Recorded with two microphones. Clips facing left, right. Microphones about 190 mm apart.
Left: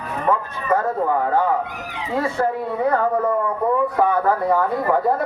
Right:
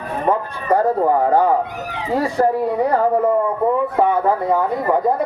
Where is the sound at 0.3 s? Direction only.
35° right (ahead or behind).